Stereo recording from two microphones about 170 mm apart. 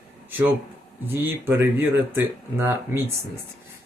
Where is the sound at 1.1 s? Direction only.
15° right (ahead or behind).